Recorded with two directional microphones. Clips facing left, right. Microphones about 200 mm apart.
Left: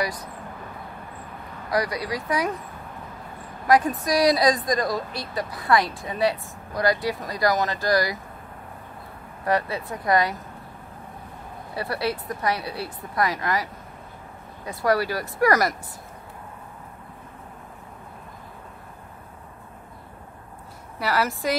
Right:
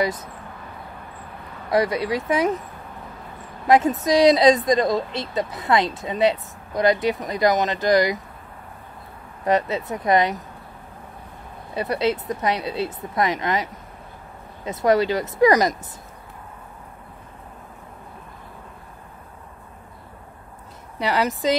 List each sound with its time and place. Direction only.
0.0 s speech: 25° right (ahead or behind)
1.7 s speech: 25° right (ahead or behind)
3.6 s speech: 25° right (ahead or behind)
9.4 s speech: 20° right (ahead or behind)
11.7 s speech: 20° right (ahead or behind)
21.0 s speech: 20° right (ahead or behind)